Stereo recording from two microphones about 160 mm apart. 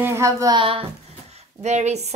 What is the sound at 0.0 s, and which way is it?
Speech, 15° right (ahead or behind).